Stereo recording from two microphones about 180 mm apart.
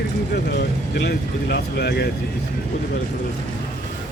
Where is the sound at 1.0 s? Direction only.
65° left (ahead or behind).